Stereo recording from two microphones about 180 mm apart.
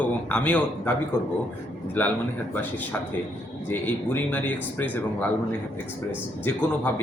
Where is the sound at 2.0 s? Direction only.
10° left (ahead or behind).